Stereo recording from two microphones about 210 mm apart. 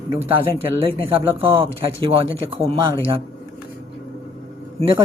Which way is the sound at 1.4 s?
25° right (ahead or behind).